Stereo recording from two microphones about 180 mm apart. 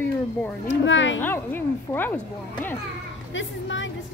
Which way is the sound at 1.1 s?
10° left (ahead or behind).